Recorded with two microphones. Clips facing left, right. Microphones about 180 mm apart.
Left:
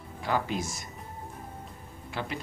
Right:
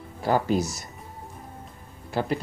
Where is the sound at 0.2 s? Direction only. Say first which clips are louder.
Right 7 dB; 40° right (ahead or behind).